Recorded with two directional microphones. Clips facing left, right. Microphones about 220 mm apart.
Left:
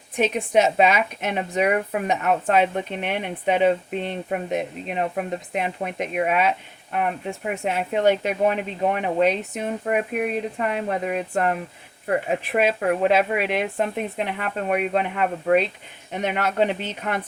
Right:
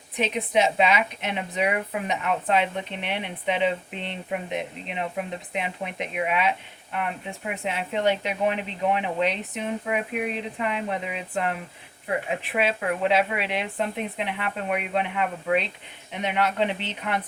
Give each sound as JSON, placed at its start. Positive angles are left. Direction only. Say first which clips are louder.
{"t": 0.2, "sound": "a woman's voice", "louder": "left 4 dB", "side_deg": 45}